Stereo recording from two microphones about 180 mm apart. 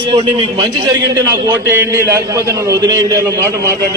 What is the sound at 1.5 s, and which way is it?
A man's voice, 15° right (ahead or behind).